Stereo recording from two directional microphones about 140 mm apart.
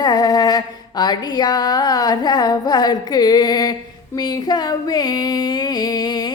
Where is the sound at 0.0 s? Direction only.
25° left (ahead or behind).